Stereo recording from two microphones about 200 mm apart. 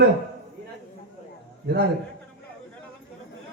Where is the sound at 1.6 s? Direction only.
55° right (ahead or behind).